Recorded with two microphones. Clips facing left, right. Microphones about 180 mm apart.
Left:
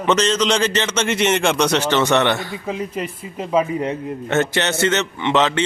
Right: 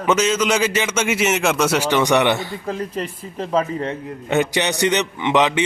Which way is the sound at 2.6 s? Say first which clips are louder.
Even; 5° left (ahead or behind).